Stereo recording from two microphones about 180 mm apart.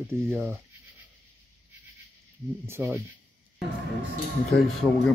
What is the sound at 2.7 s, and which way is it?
Speech, 15° right (ahead or behind).